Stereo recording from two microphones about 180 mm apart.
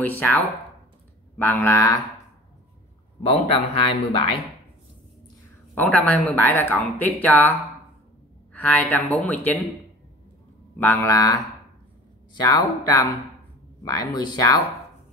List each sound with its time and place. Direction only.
0.0 s speech: 10° left (ahead or behind)
3.2 s speech: 30° left (ahead or behind)
5.8 s speech: 10° left (ahead or behind)
8.6 s speech: 10° left (ahead or behind)
10.8 s speech: 15° left (ahead or behind)